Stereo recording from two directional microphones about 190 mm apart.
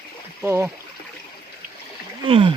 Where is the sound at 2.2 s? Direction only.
25° right (ahead or behind).